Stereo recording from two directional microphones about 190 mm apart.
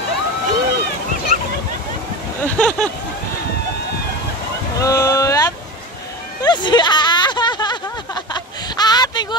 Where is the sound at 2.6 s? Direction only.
5° left (ahead or behind).